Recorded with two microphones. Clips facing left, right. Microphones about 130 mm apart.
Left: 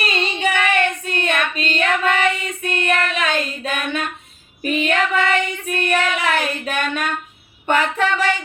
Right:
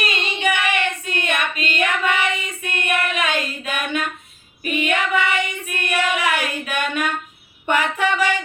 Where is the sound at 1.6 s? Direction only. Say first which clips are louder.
Left 2 dB; 15° right (ahead or behind).